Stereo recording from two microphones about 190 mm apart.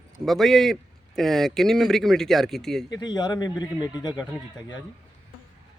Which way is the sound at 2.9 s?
20° left (ahead or behind).